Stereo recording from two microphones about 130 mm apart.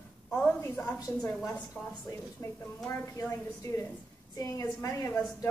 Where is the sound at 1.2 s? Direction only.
5° left (ahead or behind).